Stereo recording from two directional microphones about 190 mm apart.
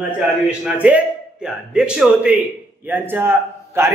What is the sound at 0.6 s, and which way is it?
A man's voice, 5° right (ahead or behind).